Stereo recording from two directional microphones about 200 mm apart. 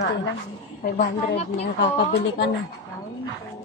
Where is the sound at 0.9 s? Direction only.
35° left (ahead or behind).